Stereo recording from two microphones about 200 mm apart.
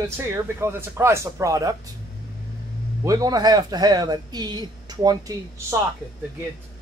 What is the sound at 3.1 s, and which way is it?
Speech, 20° right (ahead or behind).